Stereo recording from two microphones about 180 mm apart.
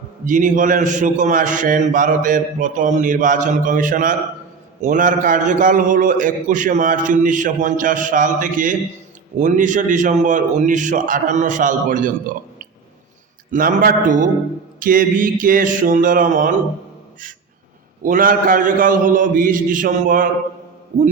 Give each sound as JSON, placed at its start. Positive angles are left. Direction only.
{"t": 0.3, "sound": "a man's voice", "side_deg": -45}
{"t": 13.5, "sound": "a man's voice", "side_deg": -50}
{"t": 18.0, "sound": "a man's voice", "side_deg": -50}